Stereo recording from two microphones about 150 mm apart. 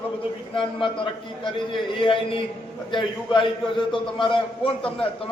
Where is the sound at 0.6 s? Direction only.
35° left (ahead or behind).